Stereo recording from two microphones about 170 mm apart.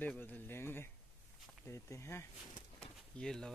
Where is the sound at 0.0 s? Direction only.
10° left (ahead or behind).